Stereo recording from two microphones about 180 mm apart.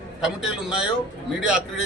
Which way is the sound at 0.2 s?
5° right (ahead or behind).